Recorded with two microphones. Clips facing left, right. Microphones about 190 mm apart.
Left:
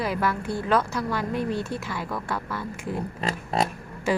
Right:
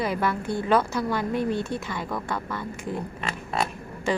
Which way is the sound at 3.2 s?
35° left (ahead or behind).